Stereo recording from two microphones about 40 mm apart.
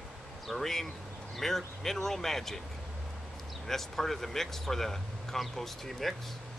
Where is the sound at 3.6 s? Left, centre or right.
Centre.